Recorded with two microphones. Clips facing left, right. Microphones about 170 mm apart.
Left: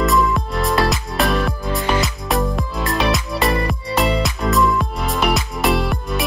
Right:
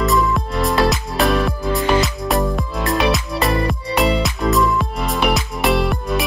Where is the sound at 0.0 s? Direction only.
Centre (ahead or behind).